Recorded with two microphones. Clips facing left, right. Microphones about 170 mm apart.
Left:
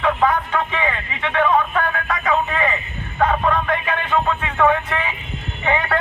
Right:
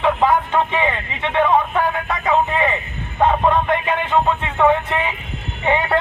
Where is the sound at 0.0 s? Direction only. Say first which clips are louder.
Right 2 dB; 25° right (ahead or behind).